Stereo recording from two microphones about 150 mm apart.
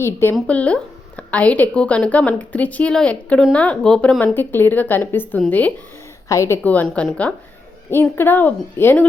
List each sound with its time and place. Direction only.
0.0 s a woman's voice: 15° left (ahead or behind)
6.6 s a woman's voice: 10° left (ahead or behind)